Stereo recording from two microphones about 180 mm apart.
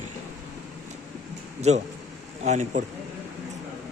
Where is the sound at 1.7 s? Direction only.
40° right (ahead or behind).